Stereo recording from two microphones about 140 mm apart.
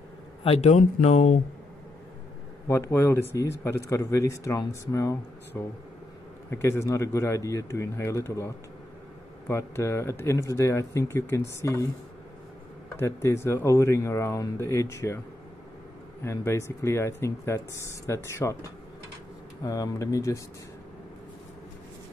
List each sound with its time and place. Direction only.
0.4 s speech: 45° left (ahead or behind)
2.7 s speech: 20° left (ahead or behind)
13.0 s speech: 20° left (ahead or behind)